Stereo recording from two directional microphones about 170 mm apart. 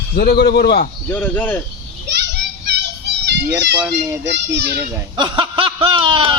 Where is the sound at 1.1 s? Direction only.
10° left (ahead or behind).